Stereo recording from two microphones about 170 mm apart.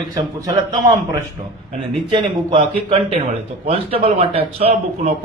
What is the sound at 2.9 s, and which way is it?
Speech, 35° right (ahead or behind).